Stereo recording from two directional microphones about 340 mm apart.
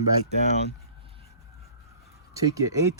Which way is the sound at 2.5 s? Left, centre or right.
Centre.